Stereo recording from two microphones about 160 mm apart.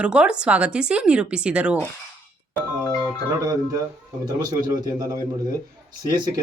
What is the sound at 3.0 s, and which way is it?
Speech, 25° right (ahead or behind).